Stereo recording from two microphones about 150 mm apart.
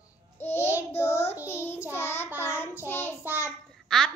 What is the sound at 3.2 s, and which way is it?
Child singing, 10° right (ahead or behind).